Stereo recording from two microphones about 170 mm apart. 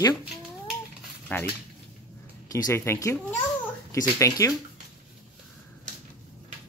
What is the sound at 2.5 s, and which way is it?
Speech, 15° left (ahead or behind).